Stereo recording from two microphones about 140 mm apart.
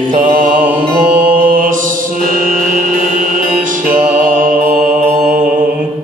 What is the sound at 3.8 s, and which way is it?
Music, 10° right (ahead or behind).